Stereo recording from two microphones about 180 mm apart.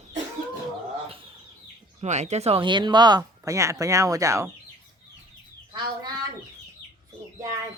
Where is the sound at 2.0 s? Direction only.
40° right (ahead or behind); by 4.5 s 15° right (ahead or behind).